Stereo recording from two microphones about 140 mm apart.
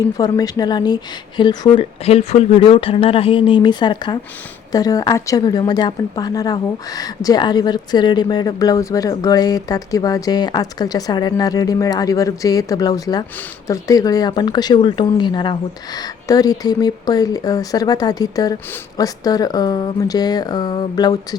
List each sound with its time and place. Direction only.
0.2 s a woman's voice: 25° left (ahead or behind)